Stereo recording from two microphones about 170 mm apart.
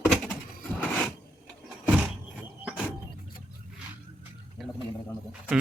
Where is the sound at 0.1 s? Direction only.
Centre (ahead or behind).